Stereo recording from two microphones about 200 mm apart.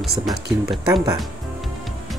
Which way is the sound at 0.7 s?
20° right (ahead or behind).